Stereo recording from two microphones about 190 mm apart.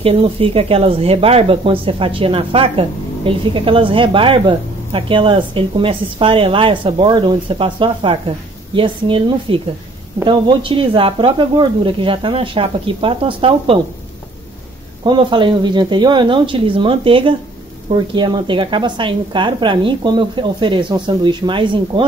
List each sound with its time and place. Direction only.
0.0 s speech: 30° right (ahead or behind)
15.0 s speech: 25° right (ahead or behind)